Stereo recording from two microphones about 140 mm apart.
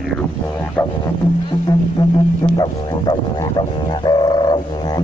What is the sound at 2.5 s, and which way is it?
Music, 30° left (ahead or behind).